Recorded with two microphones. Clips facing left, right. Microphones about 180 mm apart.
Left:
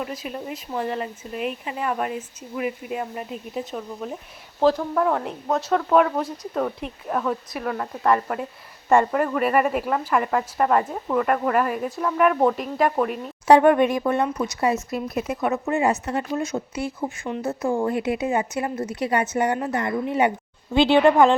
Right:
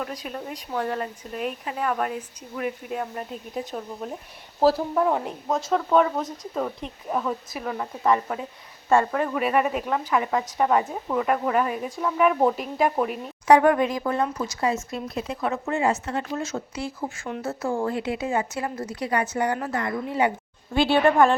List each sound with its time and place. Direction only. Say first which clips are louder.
0.0 s speech: left 2 dB; 5° left (ahead or behind)
13.5 s a woman's voice: left 3 dB; 25° left (ahead or behind)